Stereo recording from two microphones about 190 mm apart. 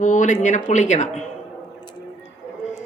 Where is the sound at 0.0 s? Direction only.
40° left (ahead or behind).